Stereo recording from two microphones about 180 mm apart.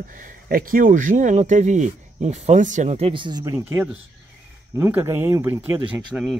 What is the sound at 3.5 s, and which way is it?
Speech, 10° right (ahead or behind).